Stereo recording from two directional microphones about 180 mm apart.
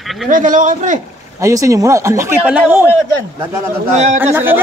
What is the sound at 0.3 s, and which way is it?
Speech, 45° right (ahead or behind).